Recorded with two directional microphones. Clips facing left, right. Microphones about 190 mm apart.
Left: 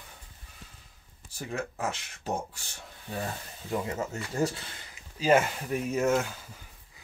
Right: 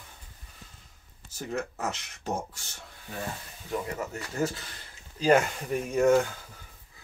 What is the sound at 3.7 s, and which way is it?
Speech, 25° left (ahead or behind).